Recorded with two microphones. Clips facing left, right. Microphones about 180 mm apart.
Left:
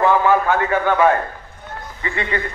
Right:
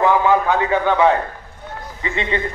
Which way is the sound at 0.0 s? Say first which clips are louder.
Even; 15° right (ahead or behind).